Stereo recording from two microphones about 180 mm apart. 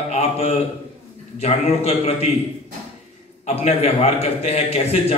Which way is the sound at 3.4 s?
35° left (ahead or behind).